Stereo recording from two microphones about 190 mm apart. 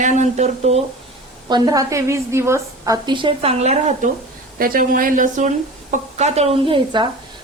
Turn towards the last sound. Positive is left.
turn(degrees=-25)  # may be behind; listen again after turning